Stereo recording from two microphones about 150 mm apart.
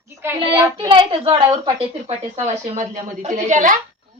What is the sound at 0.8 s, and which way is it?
A woman's voice, 35° right (ahead or behind).